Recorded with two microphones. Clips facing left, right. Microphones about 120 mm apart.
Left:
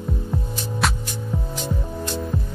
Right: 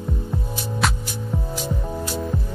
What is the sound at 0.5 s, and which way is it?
Music, 5° right (ahead or behind).